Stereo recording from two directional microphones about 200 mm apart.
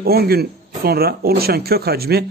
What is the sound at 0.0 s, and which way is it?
Speech, 50° right (ahead or behind).